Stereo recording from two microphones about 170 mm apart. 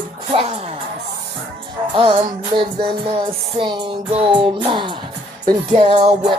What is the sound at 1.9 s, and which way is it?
Music, 30° right (ahead or behind).